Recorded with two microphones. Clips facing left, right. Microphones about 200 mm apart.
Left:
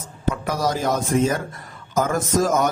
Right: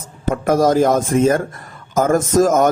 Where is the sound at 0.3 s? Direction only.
50° right (ahead or behind).